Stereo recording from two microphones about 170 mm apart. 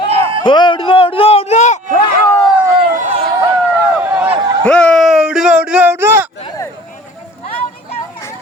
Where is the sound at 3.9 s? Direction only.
10° right (ahead or behind).